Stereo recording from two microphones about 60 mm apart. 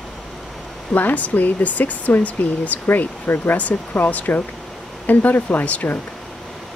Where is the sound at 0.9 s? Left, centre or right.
Left.